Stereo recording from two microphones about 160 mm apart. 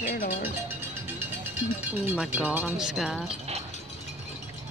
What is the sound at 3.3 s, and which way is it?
Speech, 40° right (ahead or behind).